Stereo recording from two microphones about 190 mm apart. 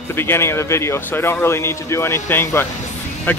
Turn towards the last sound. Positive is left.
turn(degrees=10)  # may be behind; listen again after turning